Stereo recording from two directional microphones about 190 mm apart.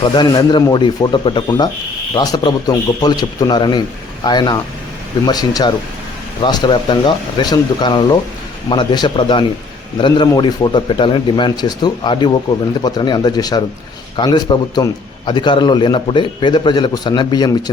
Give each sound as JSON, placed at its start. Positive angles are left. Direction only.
{"t": 0.0, "sound": "a man's voice", "side_deg": 25}